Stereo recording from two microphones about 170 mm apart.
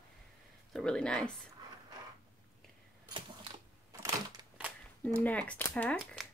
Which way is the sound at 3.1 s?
30° right (ahead or behind).